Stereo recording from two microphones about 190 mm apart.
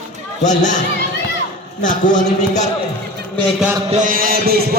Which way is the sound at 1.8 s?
40° left (ahead or behind).